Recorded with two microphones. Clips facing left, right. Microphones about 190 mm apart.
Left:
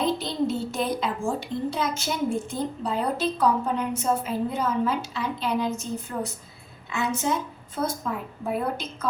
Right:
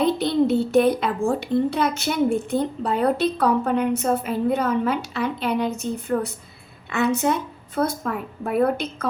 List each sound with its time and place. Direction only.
0.0 s a child's voice: 65° right (ahead or behind)